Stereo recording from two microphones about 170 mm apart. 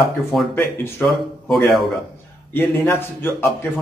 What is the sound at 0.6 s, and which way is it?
Speech, 15° left (ahead or behind).